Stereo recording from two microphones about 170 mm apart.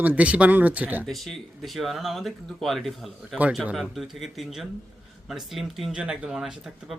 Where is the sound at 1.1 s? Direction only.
Centre (ahead or behind).